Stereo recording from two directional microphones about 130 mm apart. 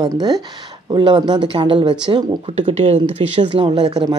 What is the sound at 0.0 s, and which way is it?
Speech, 30° right (ahead or behind).